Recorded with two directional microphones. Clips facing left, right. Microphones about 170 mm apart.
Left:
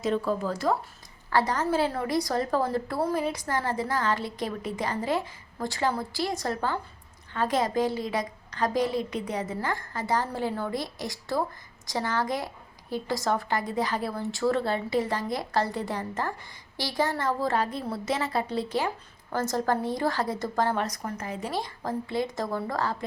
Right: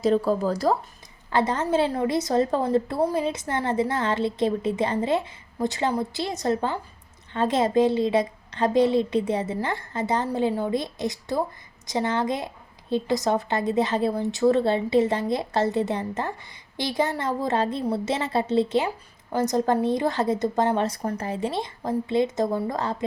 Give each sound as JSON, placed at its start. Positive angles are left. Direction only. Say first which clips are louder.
{"t": 0.0, "sound": "speech", "louder": "right 5 dB", "side_deg": -35}
{"t": 1.3, "sound": "a woman's voice", "louder": "right 2 dB", "side_deg": -20}